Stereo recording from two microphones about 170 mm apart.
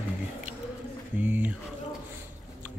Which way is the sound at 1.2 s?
10° right (ahead or behind).